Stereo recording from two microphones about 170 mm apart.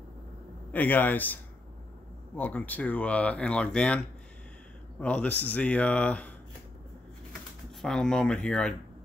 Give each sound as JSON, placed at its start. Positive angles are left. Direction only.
{"t": 0.7, "sound": "speech", "side_deg": 10}
{"t": 5.0, "sound": "speech", "side_deg": 10}
{"t": 7.8, "sound": "speech", "side_deg": 5}